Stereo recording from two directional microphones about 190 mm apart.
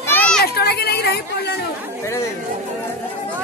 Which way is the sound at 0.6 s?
55° left (ahead or behind).